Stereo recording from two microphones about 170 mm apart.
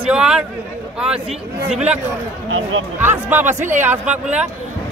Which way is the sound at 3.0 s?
10° right (ahead or behind).